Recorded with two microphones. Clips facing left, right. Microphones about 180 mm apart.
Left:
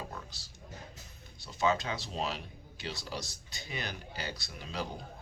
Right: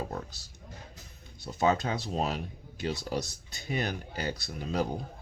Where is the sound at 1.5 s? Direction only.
45° right (ahead or behind).